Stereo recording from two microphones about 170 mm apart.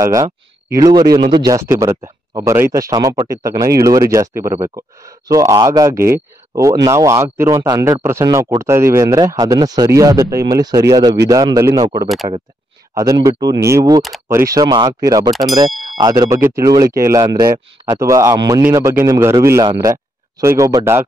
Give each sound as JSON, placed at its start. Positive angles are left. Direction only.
{"t": 0.0, "sound": "speech", "side_deg": -20}